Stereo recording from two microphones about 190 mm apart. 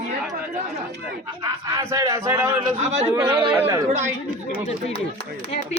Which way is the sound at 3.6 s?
15° right (ahead or behind).